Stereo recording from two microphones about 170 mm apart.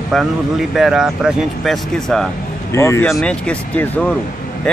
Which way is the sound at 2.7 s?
15° left (ahead or behind).